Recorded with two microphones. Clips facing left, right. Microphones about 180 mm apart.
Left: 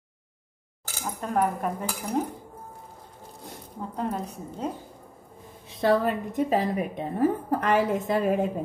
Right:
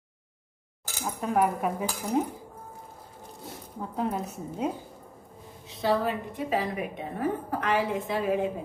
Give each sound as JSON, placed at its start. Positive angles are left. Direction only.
{"t": 1.0, "sound": "speech", "side_deg": -5}
{"t": 3.4, "sound": "speech", "side_deg": 0}
{"t": 5.7, "sound": "a woman's voice", "side_deg": 55}